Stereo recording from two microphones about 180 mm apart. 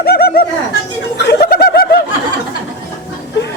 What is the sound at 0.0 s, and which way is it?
Bird, 60° left (ahead or behind).